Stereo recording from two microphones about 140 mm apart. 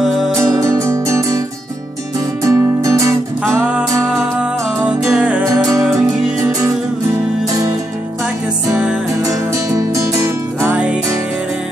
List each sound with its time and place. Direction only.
0.0 s music: centre (ahead or behind)
0.4 s music: 20° right (ahead or behind)
2.4 s music: 25° right (ahead or behind)
5.1 s music: 10° right (ahead or behind)
8.7 s music: 5° right (ahead or behind)
9.7 s music: 20° right (ahead or behind)